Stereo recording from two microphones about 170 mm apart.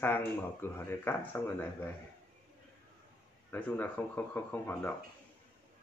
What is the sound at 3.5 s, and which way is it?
Speech, 10° left (ahead or behind).